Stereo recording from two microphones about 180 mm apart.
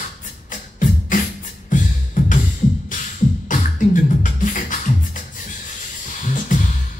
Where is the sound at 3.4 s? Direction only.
45° left (ahead or behind).